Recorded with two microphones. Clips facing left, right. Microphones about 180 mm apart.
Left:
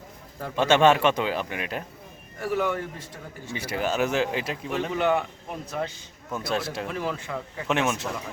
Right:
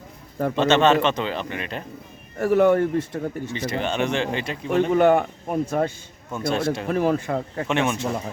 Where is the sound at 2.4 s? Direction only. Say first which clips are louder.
Right 9 dB; 50° right (ahead or behind).